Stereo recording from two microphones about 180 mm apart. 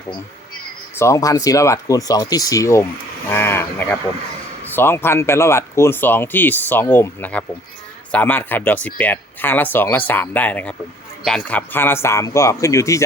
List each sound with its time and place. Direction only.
0.9 s speech: 15° left (ahead or behind)